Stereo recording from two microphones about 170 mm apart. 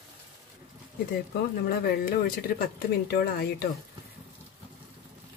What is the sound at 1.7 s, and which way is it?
Speech, 60° left (ahead or behind).